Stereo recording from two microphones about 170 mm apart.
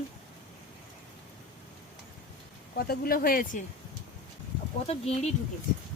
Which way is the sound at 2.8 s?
60° left (ahead or behind).